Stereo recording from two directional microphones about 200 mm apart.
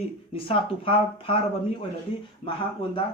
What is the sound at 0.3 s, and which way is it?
A man's voice, 25° left (ahead or behind).